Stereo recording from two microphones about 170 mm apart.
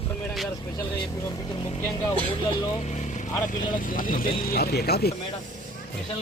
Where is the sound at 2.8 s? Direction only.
45° left (ahead or behind).